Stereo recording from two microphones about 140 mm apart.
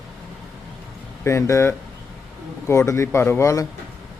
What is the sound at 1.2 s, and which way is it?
A man's voice, 20° left (ahead or behind).